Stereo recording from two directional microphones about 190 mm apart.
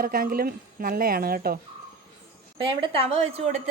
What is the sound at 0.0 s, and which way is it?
A woman's voice, 50° right (ahead or behind).